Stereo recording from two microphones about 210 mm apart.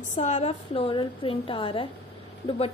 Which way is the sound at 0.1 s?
35° left (ahead or behind).